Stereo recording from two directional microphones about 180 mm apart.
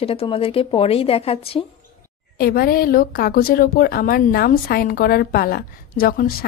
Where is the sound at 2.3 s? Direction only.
55° left (ahead or behind).